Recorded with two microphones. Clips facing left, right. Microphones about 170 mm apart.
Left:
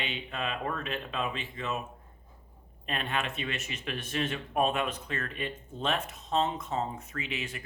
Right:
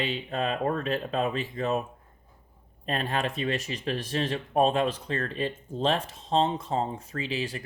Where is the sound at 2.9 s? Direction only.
35° right (ahead or behind).